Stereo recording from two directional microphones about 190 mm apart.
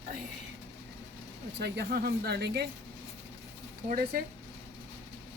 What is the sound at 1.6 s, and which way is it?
Speech, 55° right (ahead or behind).